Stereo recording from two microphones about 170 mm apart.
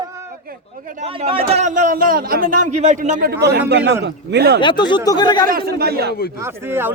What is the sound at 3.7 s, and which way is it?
Speech, 90° right.